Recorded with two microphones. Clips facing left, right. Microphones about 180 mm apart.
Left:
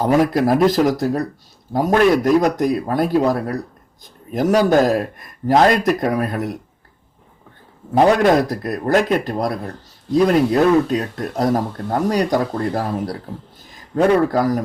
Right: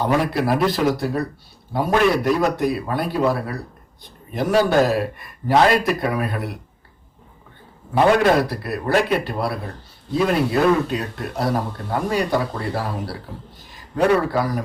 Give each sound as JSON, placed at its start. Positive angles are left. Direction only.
{"t": 0.0, "sound": "a man's voice", "side_deg": 45}
{"t": 7.9, "sound": "a man's voice", "side_deg": 45}